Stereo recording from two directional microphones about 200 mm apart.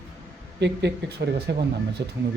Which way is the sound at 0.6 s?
60° right (ahead or behind).